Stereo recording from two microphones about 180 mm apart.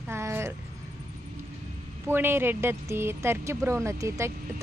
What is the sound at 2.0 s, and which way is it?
Speech, 10° right (ahead or behind).